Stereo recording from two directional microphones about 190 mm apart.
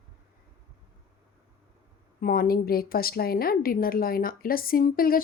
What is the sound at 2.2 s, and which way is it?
Speech, 50° left (ahead or behind).